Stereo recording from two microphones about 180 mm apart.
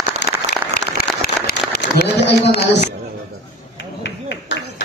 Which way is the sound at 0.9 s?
60° left (ahead or behind).